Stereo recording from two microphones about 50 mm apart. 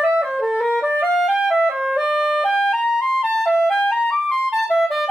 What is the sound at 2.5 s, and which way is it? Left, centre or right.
Music, centre.